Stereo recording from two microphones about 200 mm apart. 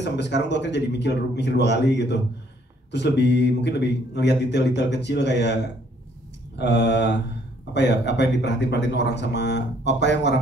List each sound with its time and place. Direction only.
0.0 s a man's voice: 60° left (ahead or behind)
6.6 s a man's voice: 60° left (ahead or behind)